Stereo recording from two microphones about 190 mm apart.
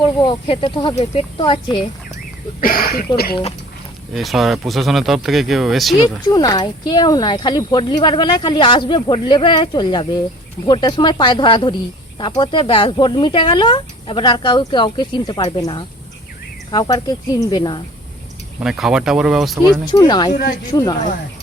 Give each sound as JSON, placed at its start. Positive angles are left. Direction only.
{"t": 0.0, "sound": "speech", "side_deg": 25}
{"t": 2.6, "sound": "speech", "side_deg": 50}
{"t": 4.1, "sound": "speech", "side_deg": 0}
{"t": 6.2, "sound": "speech", "side_deg": 20}
{"t": 18.6, "sound": "speech", "side_deg": -5}
{"t": 19.9, "sound": "speech", "side_deg": 20}